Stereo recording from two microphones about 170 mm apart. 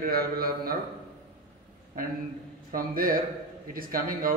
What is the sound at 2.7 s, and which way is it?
A man's voice, 60° right (ahead or behind).